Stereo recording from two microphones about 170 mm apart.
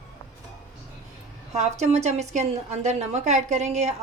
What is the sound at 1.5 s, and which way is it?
A woman's voice, 40° right (ahead or behind).